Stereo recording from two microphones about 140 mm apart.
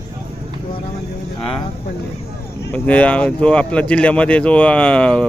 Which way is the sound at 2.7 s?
10° left (ahead or behind).